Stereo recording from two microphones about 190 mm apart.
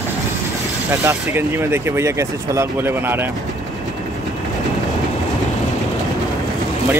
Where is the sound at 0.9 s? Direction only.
15° right (ahead or behind).